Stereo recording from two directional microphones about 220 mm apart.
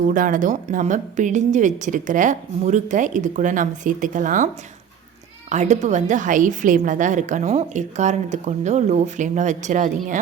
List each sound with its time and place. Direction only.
0.1 s a woman's voice: 35° right (ahead or behind)
5.5 s a woman's voice: 30° right (ahead or behind)